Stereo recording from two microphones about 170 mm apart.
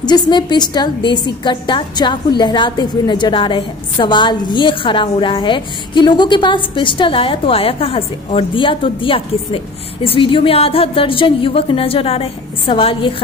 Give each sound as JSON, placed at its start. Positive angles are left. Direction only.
{"t": 0.0, "sound": "a woman's voice", "side_deg": 25}